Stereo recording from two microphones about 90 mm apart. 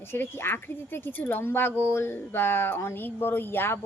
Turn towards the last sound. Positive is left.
turn(degrees=25)  # may be behind; listen again after turning